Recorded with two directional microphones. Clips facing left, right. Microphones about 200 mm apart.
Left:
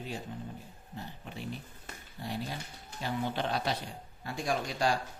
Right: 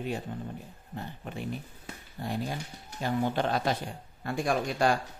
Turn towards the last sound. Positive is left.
turn(degrees=-55)  # may be behind; listen again after turning